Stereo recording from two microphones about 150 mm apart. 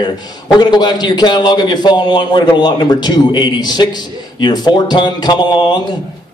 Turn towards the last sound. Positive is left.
turn(degrees=30)  # may be behind; listen again after turning